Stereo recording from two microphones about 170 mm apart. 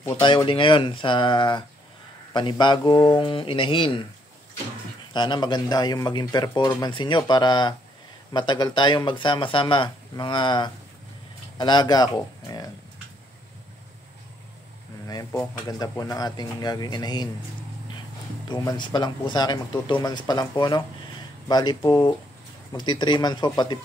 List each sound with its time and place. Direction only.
0.2 s speech: 30° left (ahead or behind)
5.1 s speech: 25° left (ahead or behind)
15.5 s speech: 25° left (ahead or behind)
18.5 s speech: 25° left (ahead or behind)